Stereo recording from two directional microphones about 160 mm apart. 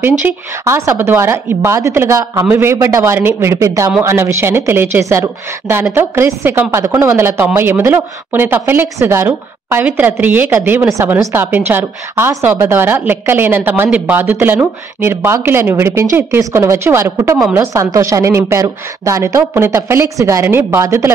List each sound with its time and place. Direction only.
0.2 s a woman's voice: 15° right (ahead or behind)